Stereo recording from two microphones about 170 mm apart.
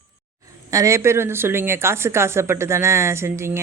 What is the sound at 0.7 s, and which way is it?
Speech, 15° right (ahead or behind).